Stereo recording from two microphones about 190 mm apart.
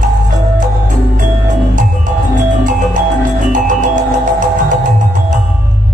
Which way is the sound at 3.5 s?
40° right (ahead or behind).